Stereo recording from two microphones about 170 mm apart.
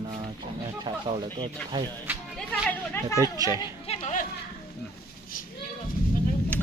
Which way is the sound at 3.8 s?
35° left (ahead or behind).